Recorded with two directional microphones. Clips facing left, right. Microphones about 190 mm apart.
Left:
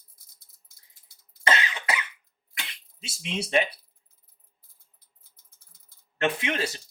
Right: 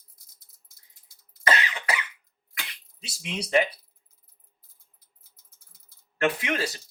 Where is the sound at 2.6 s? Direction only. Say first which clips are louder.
Even; 25° left (ahead or behind).